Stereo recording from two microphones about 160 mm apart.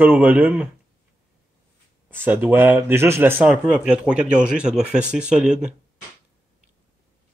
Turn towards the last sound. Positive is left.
turn(degrees=-5)  # may be behind; listen again after turning